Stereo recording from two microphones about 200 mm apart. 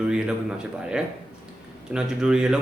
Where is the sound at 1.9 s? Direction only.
5° right (ahead or behind).